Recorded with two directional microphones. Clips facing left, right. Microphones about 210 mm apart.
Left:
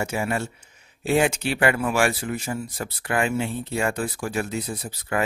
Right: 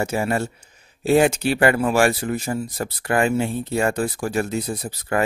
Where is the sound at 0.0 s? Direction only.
40° right (ahead or behind).